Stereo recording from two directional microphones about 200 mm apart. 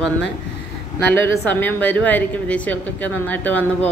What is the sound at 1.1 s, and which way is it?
A woman's voice, 10° left (ahead or behind).